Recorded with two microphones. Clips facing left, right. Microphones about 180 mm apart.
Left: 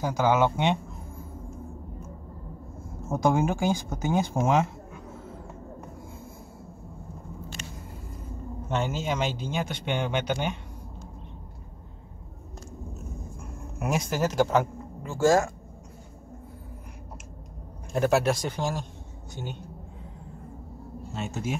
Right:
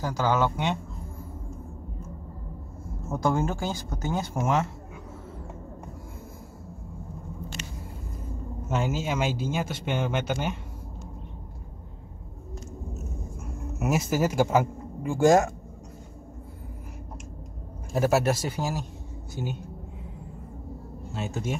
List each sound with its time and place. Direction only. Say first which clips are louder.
0.0 s speech: left 2 dB; 15° left (ahead or behind)
3.1 s speech: left 2 dB; 20° left (ahead or behind)
8.6 s speech: even; 5° right (ahead or behind)
13.4 s speech: right 4 dB; 5° right (ahead or behind)
17.9 s speech: even; 5° right (ahead or behind)
21.1 s speech: right 1 dB; centre (ahead or behind)